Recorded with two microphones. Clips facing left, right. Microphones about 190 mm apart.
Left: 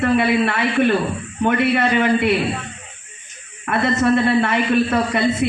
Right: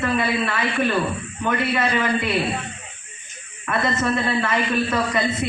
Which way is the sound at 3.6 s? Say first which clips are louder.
Left 5 dB; 65° left (ahead or behind).